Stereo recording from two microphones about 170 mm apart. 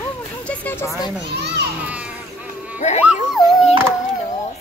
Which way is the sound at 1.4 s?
80° right.